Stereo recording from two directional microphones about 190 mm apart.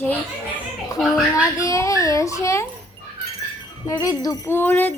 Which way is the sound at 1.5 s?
15° left (ahead or behind).